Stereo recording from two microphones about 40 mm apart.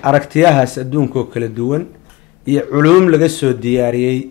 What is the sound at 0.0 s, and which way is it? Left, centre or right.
Speech, centre.